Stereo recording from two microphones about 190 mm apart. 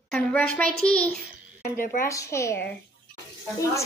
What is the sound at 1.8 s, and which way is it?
Speech, 45° left (ahead or behind).